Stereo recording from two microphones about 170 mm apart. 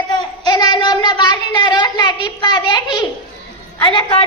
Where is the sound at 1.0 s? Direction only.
25° left (ahead or behind).